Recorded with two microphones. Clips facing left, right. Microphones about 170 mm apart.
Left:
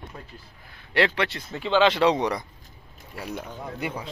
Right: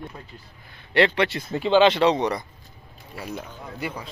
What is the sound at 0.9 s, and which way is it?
Speech, 5° left (ahead or behind).